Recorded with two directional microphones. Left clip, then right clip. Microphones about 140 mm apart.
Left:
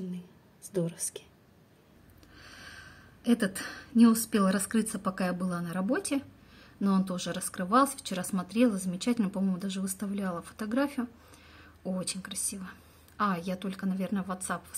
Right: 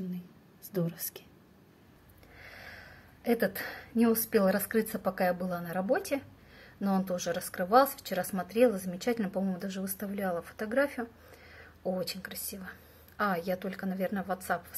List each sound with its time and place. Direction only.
0.7 s speech: 20° left (ahead or behind)
2.4 s snort: 10° left (ahead or behind)
3.3 s a woman's voice: 5° left (ahead or behind)